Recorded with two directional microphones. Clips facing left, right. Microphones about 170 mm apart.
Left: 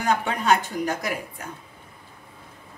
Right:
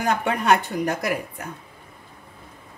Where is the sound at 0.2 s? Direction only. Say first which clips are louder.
Right 2 dB; 60° right (ahead or behind).